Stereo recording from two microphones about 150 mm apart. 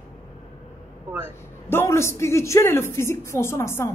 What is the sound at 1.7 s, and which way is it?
A woman's voice, 15° left (ahead or behind).